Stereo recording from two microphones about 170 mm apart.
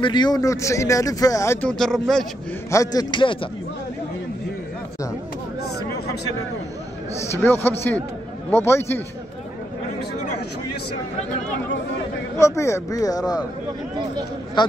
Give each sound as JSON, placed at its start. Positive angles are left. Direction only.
{"t": 0.0, "sound": "speech", "side_deg": 25}
{"t": 2.7, "sound": "speech", "side_deg": 20}
{"t": 7.3, "sound": "speech", "side_deg": 10}
{"t": 12.4, "sound": "speech", "side_deg": 15}